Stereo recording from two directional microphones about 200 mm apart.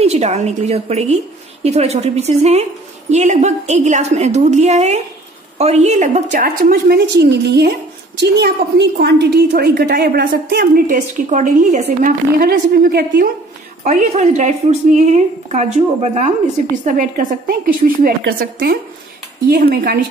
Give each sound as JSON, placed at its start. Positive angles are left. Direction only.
{"t": 0.0, "sound": "a woman's voice", "side_deg": -35}
{"t": 11.8, "sound": "a woman's voice", "side_deg": -50}
{"t": 13.8, "sound": "a woman's voice", "side_deg": -35}